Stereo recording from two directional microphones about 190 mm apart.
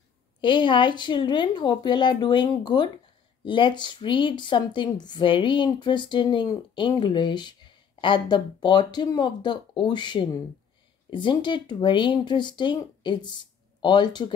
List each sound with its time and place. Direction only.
0.4 s a woman's voice: 25° left (ahead or behind)